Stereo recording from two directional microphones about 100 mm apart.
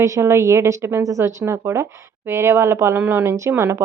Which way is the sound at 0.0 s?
30° right (ahead or behind).